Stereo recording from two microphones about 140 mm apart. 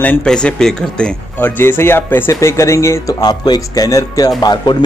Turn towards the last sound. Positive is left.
turn(degrees=30)  # may be behind; listen again after turning